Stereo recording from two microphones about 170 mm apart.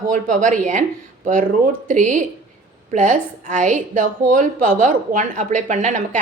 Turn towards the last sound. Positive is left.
turn(degrees=-45)  # may be behind; listen again after turning